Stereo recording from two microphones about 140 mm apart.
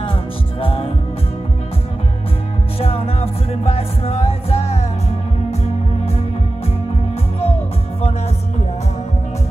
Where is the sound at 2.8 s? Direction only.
45° left (ahead or behind).